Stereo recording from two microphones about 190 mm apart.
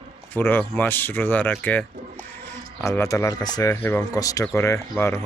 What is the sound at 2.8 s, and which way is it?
Speech, 15° left (ahead or behind).